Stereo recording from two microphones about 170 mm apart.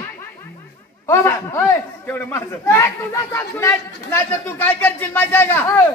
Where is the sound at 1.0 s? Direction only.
15° left (ahead or behind).